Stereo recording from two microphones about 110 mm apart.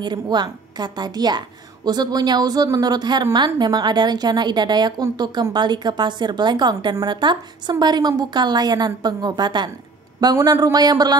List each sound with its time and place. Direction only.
0.0 s a woman's voice: 40° right (ahead or behind)